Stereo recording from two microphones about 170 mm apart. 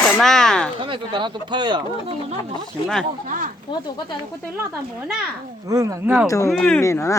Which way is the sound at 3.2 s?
50° right (ahead or behind).